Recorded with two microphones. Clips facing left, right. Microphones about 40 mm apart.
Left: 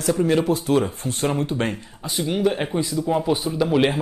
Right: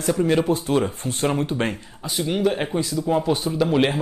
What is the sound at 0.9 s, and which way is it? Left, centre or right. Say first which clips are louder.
Speech: even; right.